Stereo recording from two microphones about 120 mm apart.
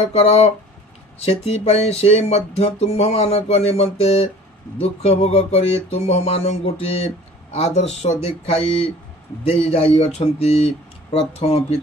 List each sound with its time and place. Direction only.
0.0 s speech: 60° left (ahead or behind)